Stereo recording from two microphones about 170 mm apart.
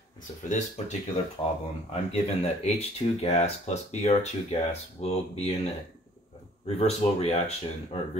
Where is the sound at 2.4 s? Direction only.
40° left (ahead or behind).